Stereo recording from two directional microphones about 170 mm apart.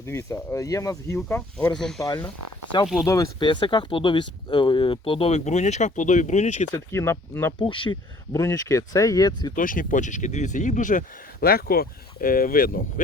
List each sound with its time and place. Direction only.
0.0 s speech: 15° left (ahead or behind); by 6.7 s 45° left (ahead or behind)
6.7 s speech: 15° left (ahead or behind)
7.6 s speech: 30° left (ahead or behind)
8.3 s speech: 20° left (ahead or behind)
9.6 s speech: 50° left (ahead or behind)